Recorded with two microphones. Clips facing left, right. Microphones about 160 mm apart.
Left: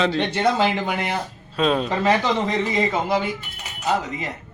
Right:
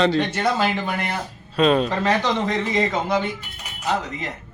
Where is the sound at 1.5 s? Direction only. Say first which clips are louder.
Right 2 dB; centre (ahead or behind).